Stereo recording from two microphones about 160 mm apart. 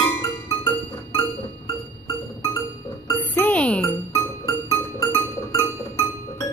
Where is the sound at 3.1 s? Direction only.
10° left (ahead or behind).